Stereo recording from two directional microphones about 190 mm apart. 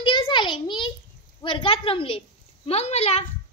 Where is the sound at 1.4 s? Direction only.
25° left (ahead or behind).